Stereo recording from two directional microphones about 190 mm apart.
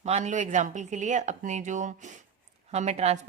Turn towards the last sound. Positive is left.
turn(degrees=-35)  # may be behind; listen again after turning